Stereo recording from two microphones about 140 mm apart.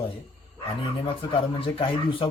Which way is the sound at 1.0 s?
40° left (ahead or behind).